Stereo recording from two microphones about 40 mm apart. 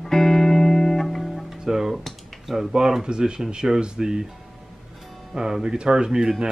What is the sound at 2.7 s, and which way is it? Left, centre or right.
Speech, centre.